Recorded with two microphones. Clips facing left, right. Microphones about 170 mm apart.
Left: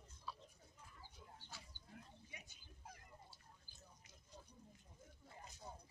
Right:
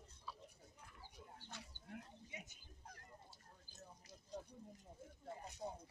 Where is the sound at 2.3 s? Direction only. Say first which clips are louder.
Right 6 dB; 20° right (ahead or behind).